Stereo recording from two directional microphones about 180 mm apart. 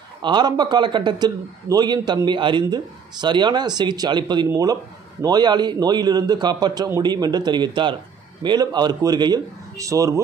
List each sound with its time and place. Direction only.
0.2 s a man's voice: 25° right (ahead or behind)